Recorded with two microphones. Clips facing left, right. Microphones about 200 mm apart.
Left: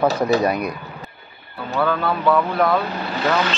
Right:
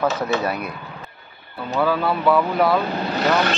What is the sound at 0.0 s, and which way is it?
Speech, 35° left (ahead or behind).